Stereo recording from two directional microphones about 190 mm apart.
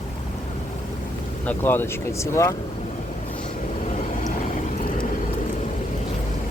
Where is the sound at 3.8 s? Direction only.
40° left (ahead or behind).